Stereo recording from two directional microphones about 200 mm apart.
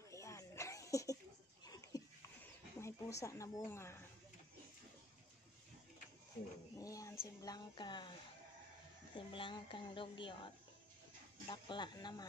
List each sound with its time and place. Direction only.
0.1 s dog: 15° left (ahead or behind)
1.6 s a sound: 20° left (ahead or behind)
2.8 s speech: 15° left (ahead or behind)
6.8 s a woman's voice: 15° left (ahead or behind)
9.1 s a woman's voice: 25° left (ahead or behind)